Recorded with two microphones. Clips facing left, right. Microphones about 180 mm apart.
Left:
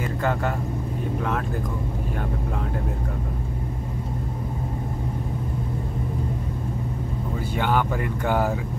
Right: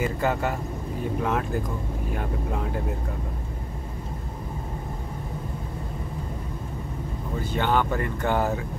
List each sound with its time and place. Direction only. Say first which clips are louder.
0.0 s speech: even; 5° right (ahead or behind)
7.5 s speech: even; 10° left (ahead or behind)